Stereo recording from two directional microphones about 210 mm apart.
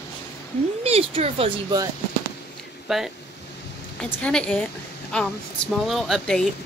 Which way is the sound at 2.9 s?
Centre (ahead or behind).